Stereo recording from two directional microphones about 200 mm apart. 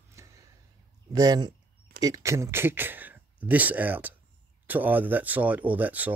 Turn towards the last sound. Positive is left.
turn(degrees=-10)  # may be behind; listen again after turning